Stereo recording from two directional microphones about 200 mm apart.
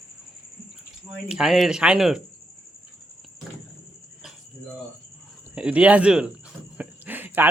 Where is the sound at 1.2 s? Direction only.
5° right (ahead or behind).